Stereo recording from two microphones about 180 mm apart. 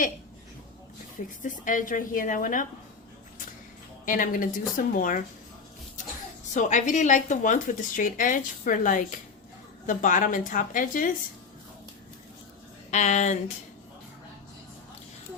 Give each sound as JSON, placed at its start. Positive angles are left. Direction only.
{"t": 1.4, "sound": "speech", "side_deg": 45}
{"t": 4.0, "sound": "speech", "side_deg": 50}
{"t": 6.5, "sound": "speech", "side_deg": 45}
{"t": 12.9, "sound": "speech", "side_deg": 40}